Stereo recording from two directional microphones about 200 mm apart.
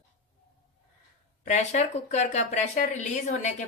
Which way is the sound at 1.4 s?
35° left (ahead or behind).